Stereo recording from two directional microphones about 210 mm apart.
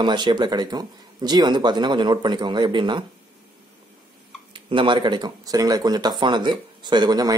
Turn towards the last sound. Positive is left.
turn(degrees=-20)  # may be behind; listen again after turning